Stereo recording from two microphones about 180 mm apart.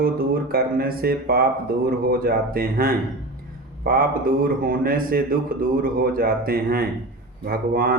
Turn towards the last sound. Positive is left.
turn(degrees=-55)  # may be behind; listen again after turning